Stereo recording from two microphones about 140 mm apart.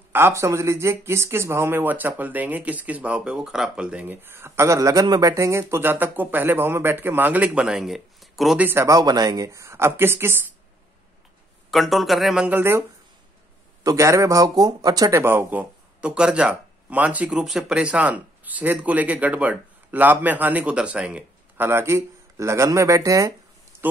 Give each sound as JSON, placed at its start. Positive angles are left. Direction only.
{"t": 0.1, "sound": "speech", "side_deg": -20}
{"t": 8.5, "sound": "speech", "side_deg": -15}
{"t": 11.7, "sound": "speech", "side_deg": 0}
{"t": 13.8, "sound": "speech", "side_deg": -20}
{"t": 23.7, "sound": "a sound", "side_deg": -15}